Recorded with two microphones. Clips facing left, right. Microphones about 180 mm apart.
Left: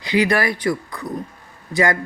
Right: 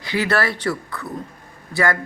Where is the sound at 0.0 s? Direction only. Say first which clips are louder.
Left 3 dB; 15° left (ahead or behind).